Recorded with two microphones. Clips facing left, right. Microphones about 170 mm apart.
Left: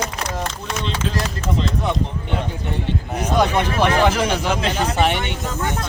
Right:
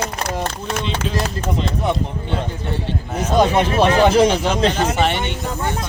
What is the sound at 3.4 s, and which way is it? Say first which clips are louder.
Speech: right 4 dB; 20° right (ahead or behind).